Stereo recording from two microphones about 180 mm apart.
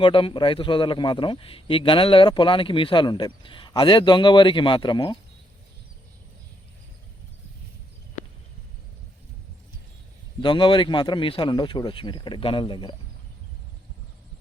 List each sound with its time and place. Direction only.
0.0 s a man's voice: 30° left (ahead or behind)
10.4 s a man's voice: 25° left (ahead or behind)